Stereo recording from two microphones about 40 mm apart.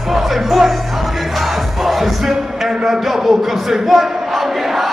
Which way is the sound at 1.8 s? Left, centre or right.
Centre.